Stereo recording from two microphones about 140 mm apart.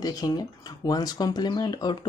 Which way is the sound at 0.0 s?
25° left (ahead or behind).